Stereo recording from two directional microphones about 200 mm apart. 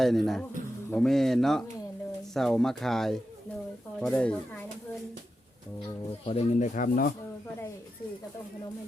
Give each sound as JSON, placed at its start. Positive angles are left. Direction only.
{"t": 0.0, "sound": "speech", "side_deg": 0}
{"t": 6.1, "sound": "speech", "side_deg": 30}